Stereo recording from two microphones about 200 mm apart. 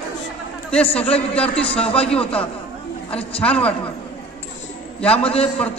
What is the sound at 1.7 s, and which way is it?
Speech, 30° left (ahead or behind).